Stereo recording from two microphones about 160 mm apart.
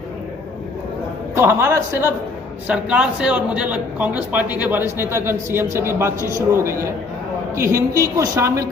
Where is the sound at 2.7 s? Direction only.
5° right (ahead or behind).